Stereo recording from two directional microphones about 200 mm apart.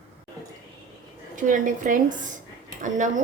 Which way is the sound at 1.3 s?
40° right (ahead or behind).